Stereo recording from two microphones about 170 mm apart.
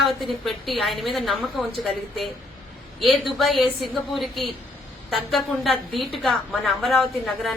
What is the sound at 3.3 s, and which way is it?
A woman's voice, centre (ahead or behind).